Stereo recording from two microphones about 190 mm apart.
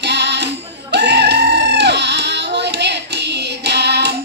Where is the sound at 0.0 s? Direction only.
65° right (ahead or behind).